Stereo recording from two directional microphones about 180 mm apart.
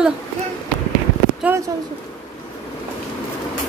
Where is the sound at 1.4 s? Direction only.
5° right (ahead or behind).